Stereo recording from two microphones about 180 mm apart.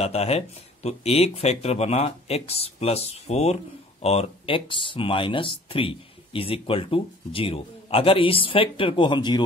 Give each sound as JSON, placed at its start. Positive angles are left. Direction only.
{"t": 0.0, "sound": "speech", "side_deg": 35}